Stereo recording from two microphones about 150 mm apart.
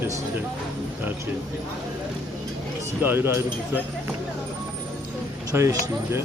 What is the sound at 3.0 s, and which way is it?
Speech, 15° right (ahead or behind).